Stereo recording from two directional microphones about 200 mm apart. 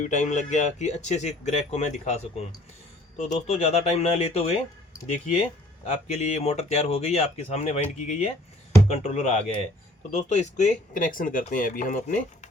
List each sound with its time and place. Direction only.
0.0 s speech: 35° left (ahead or behind)